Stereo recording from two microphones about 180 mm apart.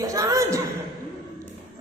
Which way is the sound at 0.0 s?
20° right (ahead or behind).